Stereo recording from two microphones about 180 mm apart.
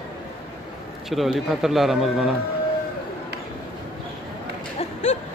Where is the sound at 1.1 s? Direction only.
Centre (ahead or behind).